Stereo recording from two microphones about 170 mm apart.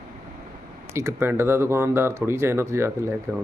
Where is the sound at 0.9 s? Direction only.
15° right (ahead or behind).